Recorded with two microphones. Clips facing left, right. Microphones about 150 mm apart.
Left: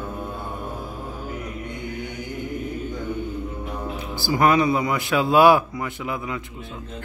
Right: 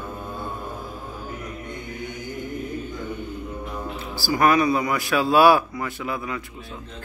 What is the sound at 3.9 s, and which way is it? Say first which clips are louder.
A man's voice: left 1 dB; 20° left (ahead or behind).